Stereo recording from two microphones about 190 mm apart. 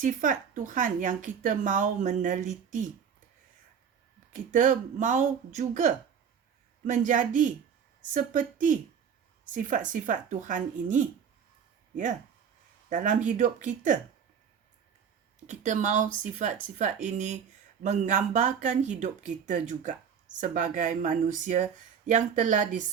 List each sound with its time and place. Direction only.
0.0 s a woman's voice: 45° right (ahead or behind)
4.3 s a woman's voice: 45° right (ahead or behind)
12.9 s speech: 40° right (ahead or behind)
15.4 s speech: 40° right (ahead or behind)